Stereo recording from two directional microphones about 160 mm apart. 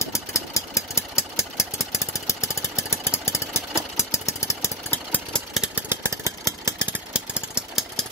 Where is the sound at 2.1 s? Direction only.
20° left (ahead or behind).